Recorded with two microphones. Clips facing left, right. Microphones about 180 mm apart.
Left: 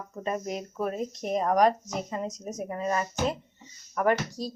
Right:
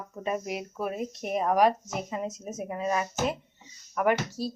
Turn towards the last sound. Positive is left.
turn(degrees=-5)  # may be behind; listen again after turning